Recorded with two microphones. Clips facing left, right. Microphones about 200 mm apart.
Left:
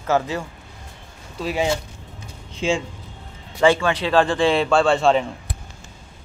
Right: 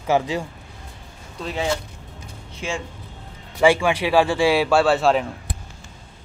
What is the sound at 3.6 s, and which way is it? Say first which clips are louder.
Speech: even; 10° right (ahead or behind).